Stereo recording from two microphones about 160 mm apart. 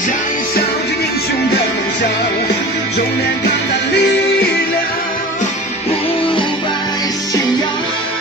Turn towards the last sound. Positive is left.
turn(degrees=25)  # may be behind; listen again after turning